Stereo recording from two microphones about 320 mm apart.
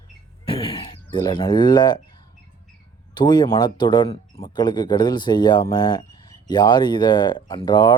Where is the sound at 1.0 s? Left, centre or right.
Centre.